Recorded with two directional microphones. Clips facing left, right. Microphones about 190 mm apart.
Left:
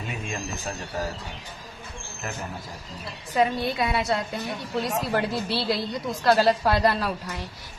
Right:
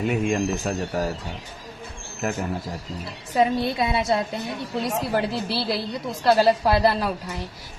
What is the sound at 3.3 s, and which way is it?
Speech, 20° right (ahead or behind).